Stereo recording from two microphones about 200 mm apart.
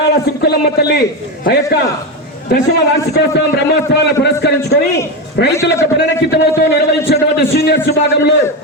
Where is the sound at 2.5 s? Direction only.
55° left (ahead or behind).